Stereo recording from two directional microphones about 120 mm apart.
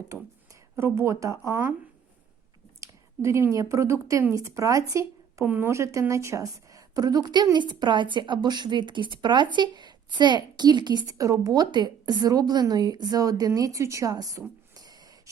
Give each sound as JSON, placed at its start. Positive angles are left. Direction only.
{"t": 0.8, "sound": "speech", "side_deg": -20}
{"t": 2.8, "sound": "a woman's voice", "side_deg": -25}
{"t": 14.8, "sound": "a sound", "side_deg": -30}